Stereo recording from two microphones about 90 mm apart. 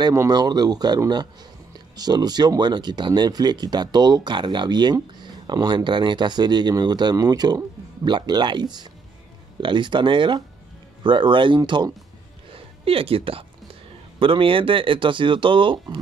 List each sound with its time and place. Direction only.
0.3 s speech: 50° right (ahead or behind)
9.6 s speech: 65° right (ahead or behind)
12.5 s speech: 90° right
14.2 s speech: 80° right